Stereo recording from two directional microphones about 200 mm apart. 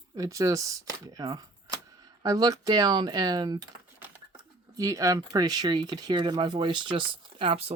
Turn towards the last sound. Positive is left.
turn(degrees=-30)  # may be behind; listen again after turning